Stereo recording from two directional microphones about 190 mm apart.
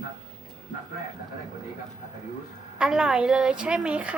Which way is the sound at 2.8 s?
5° right (ahead or behind).